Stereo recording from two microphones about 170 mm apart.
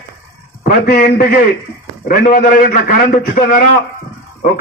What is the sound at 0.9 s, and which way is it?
A man's voice, 60° left (ahead or behind).